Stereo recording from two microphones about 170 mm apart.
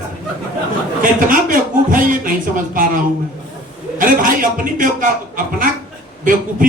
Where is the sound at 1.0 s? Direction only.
55° right (ahead or behind).